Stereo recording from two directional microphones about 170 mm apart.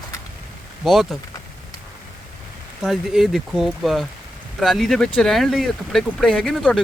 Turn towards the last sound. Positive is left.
turn(degrees=5)  # may be behind; listen again after turning